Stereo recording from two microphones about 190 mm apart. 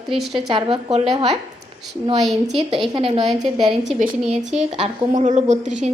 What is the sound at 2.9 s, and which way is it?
Speech, 30° right (ahead or behind).